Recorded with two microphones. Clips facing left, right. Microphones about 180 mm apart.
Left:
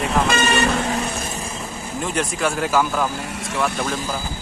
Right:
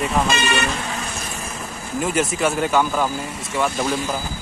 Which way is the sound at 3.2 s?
75° left (ahead or behind).